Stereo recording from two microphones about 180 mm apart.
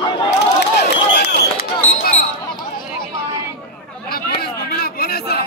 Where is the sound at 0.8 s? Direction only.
65° left (ahead or behind).